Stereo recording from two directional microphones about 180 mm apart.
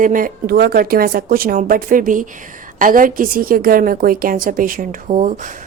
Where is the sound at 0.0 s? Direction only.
50° right (ahead or behind).